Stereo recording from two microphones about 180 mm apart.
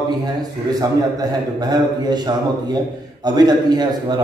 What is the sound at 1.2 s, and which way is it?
A man's voice, 20° right (ahead or behind).